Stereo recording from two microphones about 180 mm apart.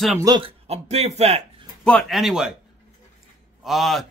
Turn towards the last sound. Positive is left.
turn(degrees=0)  # may be behind; listen again after turning